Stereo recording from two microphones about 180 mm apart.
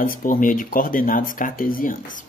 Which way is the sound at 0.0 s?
50° left (ahead or behind).